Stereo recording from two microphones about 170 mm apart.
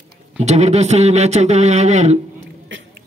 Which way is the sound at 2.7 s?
90° right.